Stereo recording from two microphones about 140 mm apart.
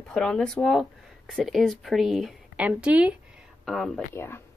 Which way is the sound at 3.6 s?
Centre (ahead or behind).